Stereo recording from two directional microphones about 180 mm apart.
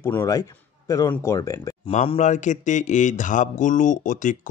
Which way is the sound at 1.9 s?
40° left (ahead or behind).